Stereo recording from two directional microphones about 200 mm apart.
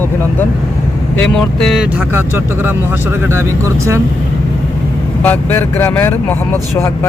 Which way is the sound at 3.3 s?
15° right (ahead or behind).